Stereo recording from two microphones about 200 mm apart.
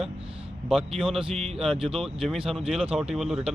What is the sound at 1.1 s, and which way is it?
Speech, centre (ahead or behind).